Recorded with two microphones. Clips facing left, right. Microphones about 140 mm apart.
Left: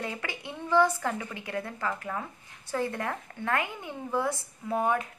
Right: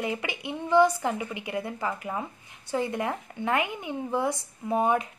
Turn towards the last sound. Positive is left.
turn(degrees=-20)  # may be behind; listen again after turning